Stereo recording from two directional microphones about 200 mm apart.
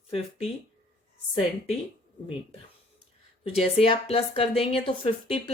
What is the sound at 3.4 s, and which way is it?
A woman's voice, 30° left (ahead or behind).